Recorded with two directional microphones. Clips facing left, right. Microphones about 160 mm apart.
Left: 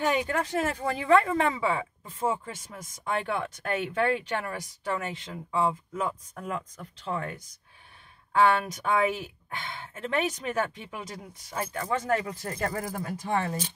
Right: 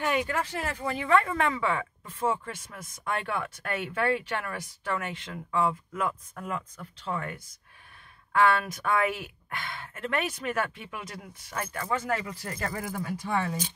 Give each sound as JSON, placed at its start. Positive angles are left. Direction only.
{"t": 0.1, "sound": "speech", "side_deg": 25}
{"t": 12.7, "sound": "speech", "side_deg": 35}